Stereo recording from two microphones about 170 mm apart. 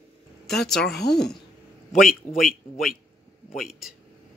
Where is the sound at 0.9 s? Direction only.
75° left (ahead or behind).